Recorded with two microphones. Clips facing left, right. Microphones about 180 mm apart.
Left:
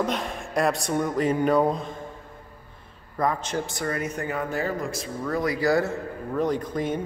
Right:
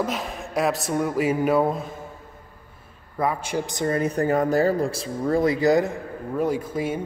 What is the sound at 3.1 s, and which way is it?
A man's voice, 5° right (ahead or behind).